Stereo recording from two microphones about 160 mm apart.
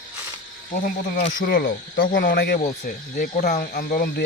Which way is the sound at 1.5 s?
85° left.